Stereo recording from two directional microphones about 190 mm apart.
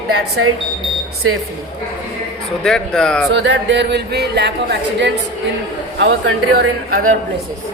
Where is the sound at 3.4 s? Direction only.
70° right (ahead or behind); by 7.2 s 55° right (ahead or behind).